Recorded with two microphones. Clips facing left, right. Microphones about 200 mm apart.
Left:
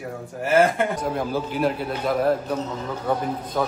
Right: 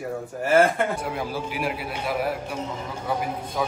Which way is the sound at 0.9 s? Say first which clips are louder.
Left 4 dB; 10° right (ahead or behind).